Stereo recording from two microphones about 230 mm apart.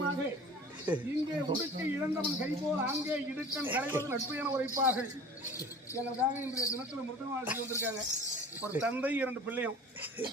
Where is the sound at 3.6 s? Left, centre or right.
Centre.